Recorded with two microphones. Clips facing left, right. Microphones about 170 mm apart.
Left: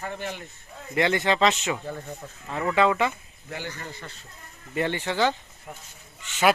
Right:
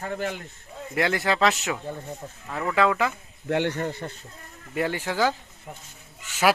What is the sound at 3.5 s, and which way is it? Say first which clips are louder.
Speech: right 11 dB; 70° right (ahead or behind).